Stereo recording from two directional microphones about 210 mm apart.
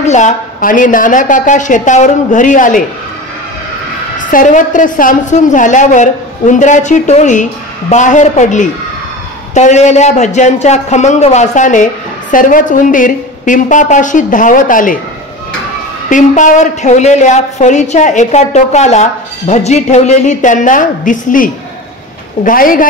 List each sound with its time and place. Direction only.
0.0 s a man's voice: 35° left (ahead or behind)
4.2 s a man's voice: 40° left (ahead or behind)
16.1 s a man's voice: 35° left (ahead or behind)